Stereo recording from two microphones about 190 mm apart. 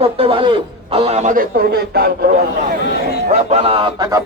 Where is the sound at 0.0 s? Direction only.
30° right (ahead or behind); by 2.3 s 55° right (ahead or behind).